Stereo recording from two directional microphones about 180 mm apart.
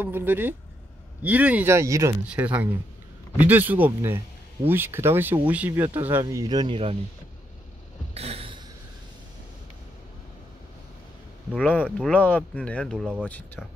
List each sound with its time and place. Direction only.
0.0 s speech: 10° right (ahead or behind); by 7.0 s 30° right (ahead or behind)
8.1 s a sound: 35° right (ahead or behind)
11.5 s speech: 5° left (ahead or behind)